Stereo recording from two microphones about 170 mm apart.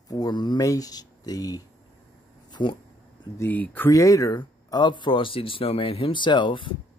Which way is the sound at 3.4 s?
10° left (ahead or behind).